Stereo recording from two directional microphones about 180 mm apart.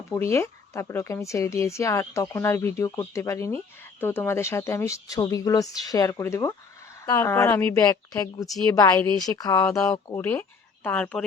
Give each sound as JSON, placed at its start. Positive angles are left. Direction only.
{"t": 0.1, "sound": "a woman's voice", "side_deg": 15}